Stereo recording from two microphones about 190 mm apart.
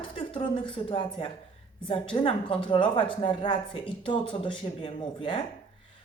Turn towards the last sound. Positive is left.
turn(degrees=25)  # may be behind; listen again after turning